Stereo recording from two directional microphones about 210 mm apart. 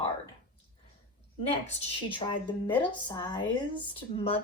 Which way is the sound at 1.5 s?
30° left (ahead or behind).